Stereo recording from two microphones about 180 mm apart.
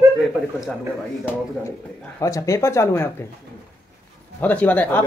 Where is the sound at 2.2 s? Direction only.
20° left (ahead or behind).